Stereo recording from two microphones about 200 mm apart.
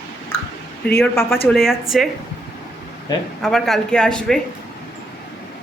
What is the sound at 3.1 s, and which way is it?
Speech, 20° left (ahead or behind).